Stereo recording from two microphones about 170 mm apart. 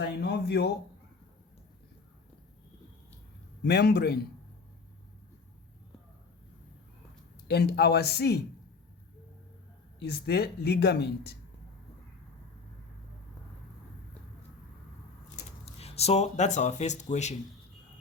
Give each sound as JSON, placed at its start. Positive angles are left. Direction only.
{"t": 0.2, "sound": "a sound", "side_deg": 75}
{"t": 3.6, "sound": "speech", "side_deg": 75}
{"t": 7.4, "sound": "speech", "side_deg": 70}
{"t": 10.0, "sound": "speech", "side_deg": 70}
{"t": 15.6, "sound": "speech", "side_deg": 40}